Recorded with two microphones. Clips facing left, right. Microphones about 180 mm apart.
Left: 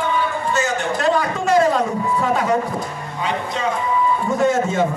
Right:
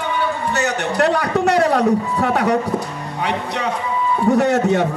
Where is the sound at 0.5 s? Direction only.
65° right (ahead or behind).